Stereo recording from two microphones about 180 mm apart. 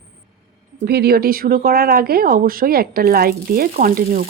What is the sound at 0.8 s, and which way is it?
Speech, 60° right (ahead or behind).